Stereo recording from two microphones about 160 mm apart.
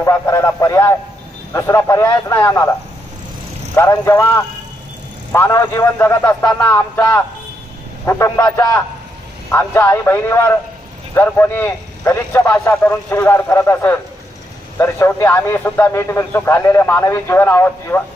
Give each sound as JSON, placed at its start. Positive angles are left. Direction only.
{"t": 0.0, "sound": "a man's voice", "side_deg": 15}
{"t": 3.7, "sound": "a man's voice", "side_deg": 20}